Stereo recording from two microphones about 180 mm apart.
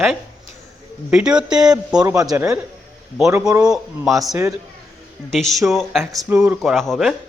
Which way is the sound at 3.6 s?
5° right (ahead or behind).